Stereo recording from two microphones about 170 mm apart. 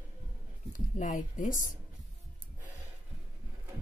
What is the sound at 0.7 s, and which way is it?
Speech, 50° left (ahead or behind).